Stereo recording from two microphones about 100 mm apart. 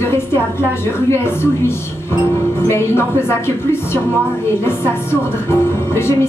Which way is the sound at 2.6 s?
25° left (ahead or behind).